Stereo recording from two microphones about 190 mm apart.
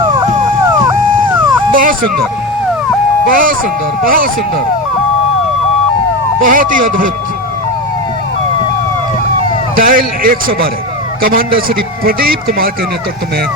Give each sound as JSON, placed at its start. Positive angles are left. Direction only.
{"t": 1.7, "sound": "a sound", "side_deg": -45}
{"t": 3.2, "sound": "a man's voice", "side_deg": -45}
{"t": 6.4, "sound": "a man's voice", "side_deg": -45}
{"t": 9.7, "sound": "a man's voice", "side_deg": -45}